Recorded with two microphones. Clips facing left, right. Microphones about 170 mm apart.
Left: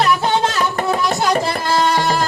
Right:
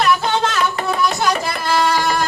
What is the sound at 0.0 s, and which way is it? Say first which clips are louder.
Music: left 1 dB; 35° left (ahead or behind).